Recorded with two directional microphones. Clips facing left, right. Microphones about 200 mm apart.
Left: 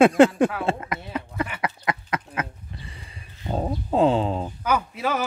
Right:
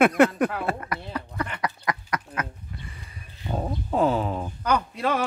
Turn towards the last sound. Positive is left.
turn(degrees=5)  # may be behind; listen again after turning